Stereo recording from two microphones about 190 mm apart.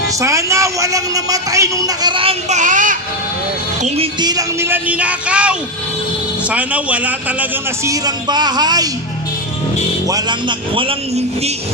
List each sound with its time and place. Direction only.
0.2 s a man's voice: 15° right (ahead or behind)
2.6 s speech: 45° right (ahead or behind)
3.8 s a man's voice: 30° right (ahead or behind)
10.0 s a man's voice: 20° right (ahead or behind)